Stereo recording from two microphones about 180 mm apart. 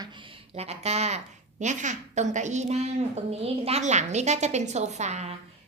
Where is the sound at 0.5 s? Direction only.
35° right (ahead or behind).